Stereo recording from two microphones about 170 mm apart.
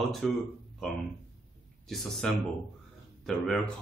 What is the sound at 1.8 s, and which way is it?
Speech, centre (ahead or behind).